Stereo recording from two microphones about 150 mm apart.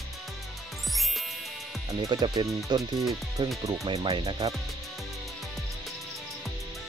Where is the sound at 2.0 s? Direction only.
25° right (ahead or behind).